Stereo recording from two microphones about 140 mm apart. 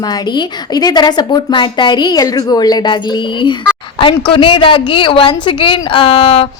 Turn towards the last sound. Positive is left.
turn(degrees=40)  # may be behind; listen again after turning